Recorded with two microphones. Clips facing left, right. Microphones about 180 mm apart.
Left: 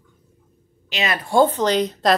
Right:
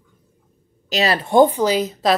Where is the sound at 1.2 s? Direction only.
15° right (ahead or behind).